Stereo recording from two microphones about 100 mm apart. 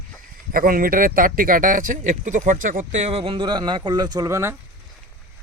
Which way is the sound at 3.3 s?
50° right (ahead or behind).